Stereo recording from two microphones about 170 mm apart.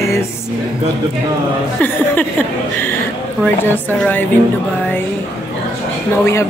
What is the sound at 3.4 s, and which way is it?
Speech, 10° left (ahead or behind).